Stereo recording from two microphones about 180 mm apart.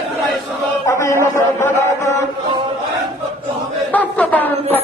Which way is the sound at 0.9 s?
15° left (ahead or behind).